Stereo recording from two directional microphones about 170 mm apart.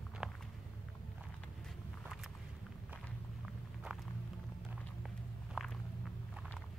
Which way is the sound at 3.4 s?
5° right (ahead or behind).